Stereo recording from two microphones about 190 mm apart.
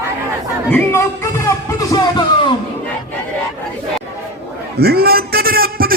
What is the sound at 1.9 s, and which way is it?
Music, 20° left (ahead or behind).